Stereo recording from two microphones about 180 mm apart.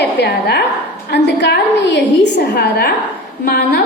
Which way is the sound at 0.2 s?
70° left (ahead or behind).